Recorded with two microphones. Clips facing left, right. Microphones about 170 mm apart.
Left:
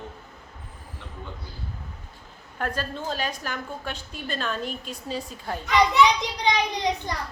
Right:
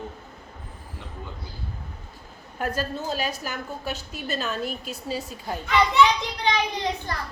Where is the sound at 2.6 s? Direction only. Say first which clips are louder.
Right 2 dB; 10° right (ahead or behind).